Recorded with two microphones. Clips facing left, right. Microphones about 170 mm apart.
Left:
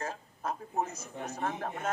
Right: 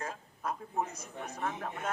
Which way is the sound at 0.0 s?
40° left (ahead or behind).